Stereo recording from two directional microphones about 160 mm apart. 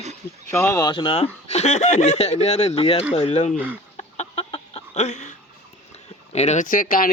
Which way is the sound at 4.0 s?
40° left (ahead or behind).